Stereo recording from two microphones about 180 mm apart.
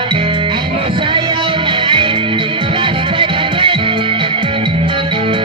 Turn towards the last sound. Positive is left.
turn(degrees=-30)  # may be behind; listen again after turning